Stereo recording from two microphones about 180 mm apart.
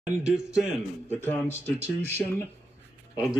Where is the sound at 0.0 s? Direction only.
5° right (ahead or behind).